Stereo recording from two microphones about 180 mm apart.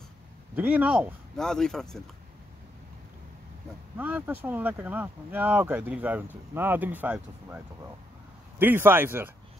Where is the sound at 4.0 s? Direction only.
10° right (ahead or behind).